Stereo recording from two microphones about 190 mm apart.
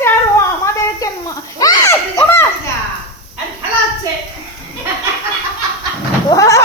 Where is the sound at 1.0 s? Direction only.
20° left (ahead or behind).